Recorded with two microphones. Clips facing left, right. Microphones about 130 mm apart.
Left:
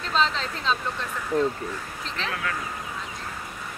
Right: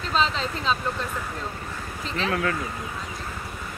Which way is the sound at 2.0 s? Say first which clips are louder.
Right 6 dB; 5° right (ahead or behind).